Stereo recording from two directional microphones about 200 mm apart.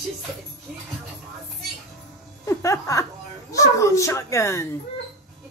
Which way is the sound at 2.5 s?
15° left (ahead or behind).